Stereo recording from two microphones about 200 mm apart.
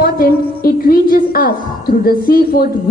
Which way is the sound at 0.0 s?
50° left (ahead or behind).